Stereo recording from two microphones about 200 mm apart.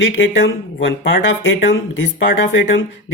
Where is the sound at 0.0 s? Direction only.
65° left (ahead or behind).